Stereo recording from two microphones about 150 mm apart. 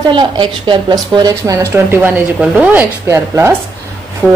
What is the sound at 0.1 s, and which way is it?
A woman's voice, 30° right (ahead or behind).